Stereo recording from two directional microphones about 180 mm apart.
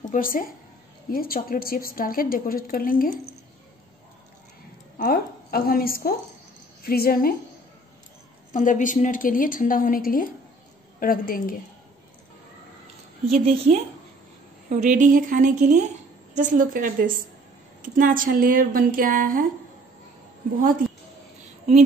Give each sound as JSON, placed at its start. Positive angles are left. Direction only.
{"t": 0.0, "sound": "a woman's voice", "side_deg": 50}
{"t": 4.9, "sound": "a woman's voice", "side_deg": 55}
{"t": 8.5, "sound": "a woman's voice", "side_deg": 45}
{"t": 13.5, "sound": "a woman's voice", "side_deg": -35}